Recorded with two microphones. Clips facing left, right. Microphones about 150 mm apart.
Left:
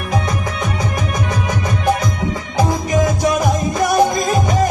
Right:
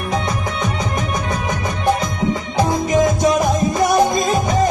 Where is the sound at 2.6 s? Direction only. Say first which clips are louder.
Right 1 dB; 25° right (ahead or behind).